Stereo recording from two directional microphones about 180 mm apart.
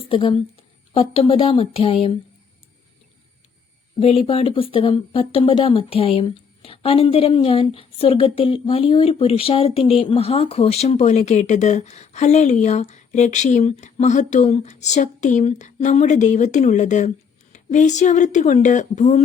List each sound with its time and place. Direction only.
0.1 s a woman's voice: 30° left (ahead or behind)
4.0 s speech: 35° left (ahead or behind)